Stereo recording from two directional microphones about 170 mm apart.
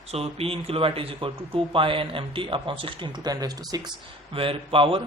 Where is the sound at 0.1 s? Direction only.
35° right (ahead or behind).